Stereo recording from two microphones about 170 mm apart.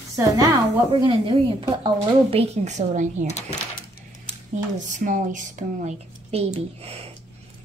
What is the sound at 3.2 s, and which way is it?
Speech, 40° left (ahead or behind).